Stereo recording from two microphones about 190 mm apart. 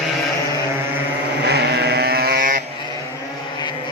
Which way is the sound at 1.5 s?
60° right (ahead or behind).